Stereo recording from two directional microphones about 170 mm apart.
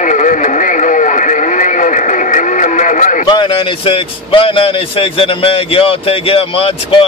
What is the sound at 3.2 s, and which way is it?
A man's voice, 30° left (ahead or behind).